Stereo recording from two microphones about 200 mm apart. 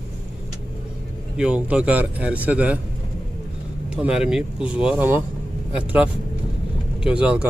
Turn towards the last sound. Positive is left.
turn(degrees=-5)  # may be behind; listen again after turning